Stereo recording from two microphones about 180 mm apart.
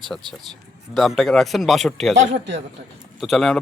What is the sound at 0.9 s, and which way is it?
Speech, centre (ahead or behind).